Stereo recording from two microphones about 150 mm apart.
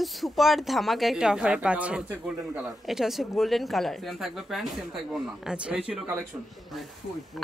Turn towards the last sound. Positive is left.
turn(degrees=-5)  # may be behind; listen again after turning